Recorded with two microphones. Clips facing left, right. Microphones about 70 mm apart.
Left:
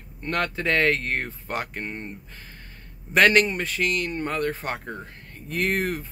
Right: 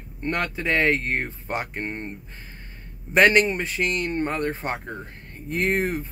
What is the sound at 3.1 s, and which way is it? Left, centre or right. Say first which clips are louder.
Speech: right 1 dB; right.